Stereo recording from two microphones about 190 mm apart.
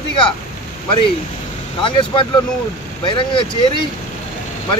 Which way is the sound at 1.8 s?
25° left (ahead or behind).